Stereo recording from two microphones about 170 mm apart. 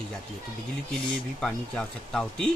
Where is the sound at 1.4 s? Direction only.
5° left (ahead or behind).